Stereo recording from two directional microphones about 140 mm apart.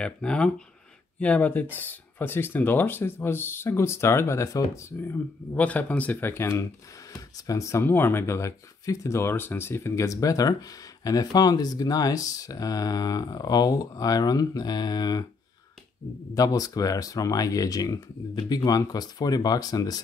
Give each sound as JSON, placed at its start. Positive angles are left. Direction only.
{"t": 0.0, "sound": "speech", "side_deg": 5}
{"t": 16.3, "sound": "speech", "side_deg": 25}